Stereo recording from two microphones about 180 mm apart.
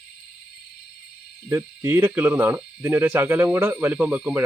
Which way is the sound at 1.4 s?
15° right (ahead or behind).